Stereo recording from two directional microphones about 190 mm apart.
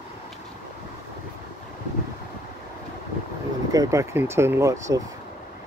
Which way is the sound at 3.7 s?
15° right (ahead or behind).